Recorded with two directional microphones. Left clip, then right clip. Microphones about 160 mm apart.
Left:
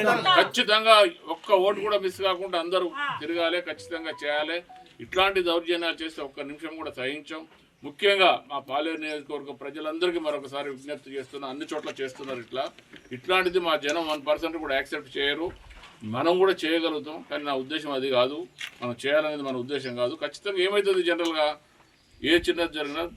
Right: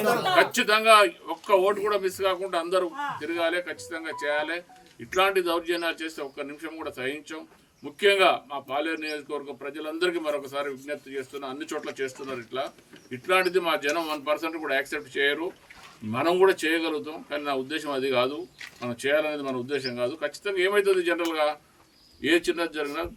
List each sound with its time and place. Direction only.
0.3 s a man's voice: 5° right (ahead or behind)